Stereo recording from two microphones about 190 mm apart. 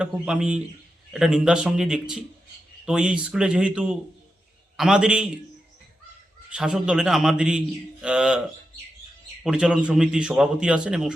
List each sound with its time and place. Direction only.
0.0 s a man's voice: 5° right (ahead or behind)
6.5 s a man's voice: 5° right (ahead or behind)
9.4 s a man's voice: 5° right (ahead or behind)